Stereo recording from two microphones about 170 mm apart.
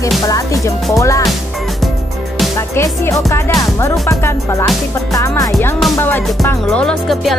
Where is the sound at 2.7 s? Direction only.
15° left (ahead or behind).